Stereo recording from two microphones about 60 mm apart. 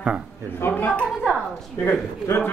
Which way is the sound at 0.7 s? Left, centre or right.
Left.